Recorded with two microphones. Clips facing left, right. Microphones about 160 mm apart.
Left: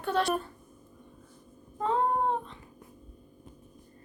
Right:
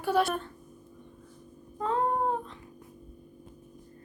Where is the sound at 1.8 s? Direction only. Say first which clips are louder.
Left 1 dB; centre (ahead or behind).